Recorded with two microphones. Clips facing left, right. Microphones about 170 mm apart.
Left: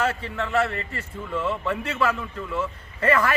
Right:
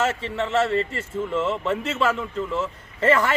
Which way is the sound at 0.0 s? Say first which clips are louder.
Right 2 dB; 25° right (ahead or behind).